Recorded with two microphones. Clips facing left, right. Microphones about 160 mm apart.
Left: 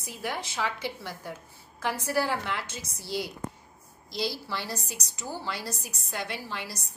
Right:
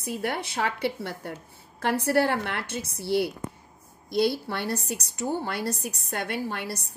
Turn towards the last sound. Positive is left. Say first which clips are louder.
# right 6 dB
turn(degrees=-55)  # may be behind; listen again after turning